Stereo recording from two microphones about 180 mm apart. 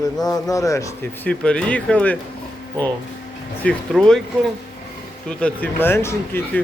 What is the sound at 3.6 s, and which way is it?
Speech, 5° left (ahead or behind).